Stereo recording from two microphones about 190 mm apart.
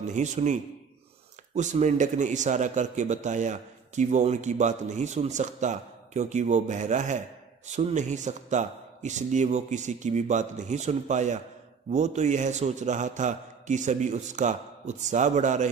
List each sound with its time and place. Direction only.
0.0 s a man's voice: 40° right (ahead or behind)